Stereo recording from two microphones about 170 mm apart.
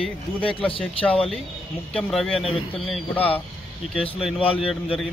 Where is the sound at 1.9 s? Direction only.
5° left (ahead or behind).